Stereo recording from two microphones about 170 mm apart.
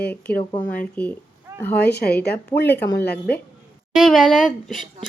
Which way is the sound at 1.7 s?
75° left (ahead or behind).